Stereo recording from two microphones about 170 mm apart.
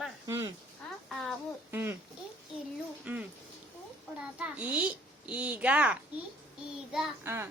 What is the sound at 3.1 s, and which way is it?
Speech, 10° right (ahead or behind).